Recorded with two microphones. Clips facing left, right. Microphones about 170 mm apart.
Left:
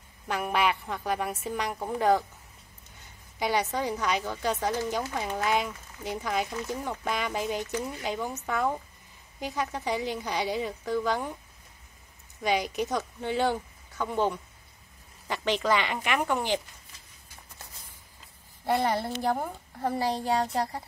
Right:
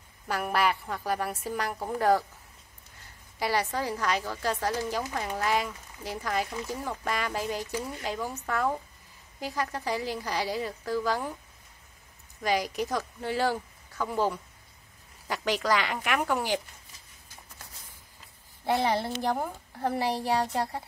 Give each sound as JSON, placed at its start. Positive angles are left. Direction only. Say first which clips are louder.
{"t": 0.3, "sound": "speech", "louder": "even", "side_deg": -5}
{"t": 3.3, "sound": "speech", "louder": "left 1 dB", "side_deg": -5}
{"t": 12.4, "sound": "speech", "louder": "left 1 dB", "side_deg": 0}
{"t": 18.7, "sound": "speech", "louder": "even", "side_deg": 0}